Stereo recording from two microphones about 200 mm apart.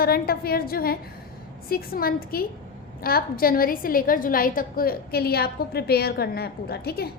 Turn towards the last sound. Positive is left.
turn(degrees=50)  # may be behind; listen again after turning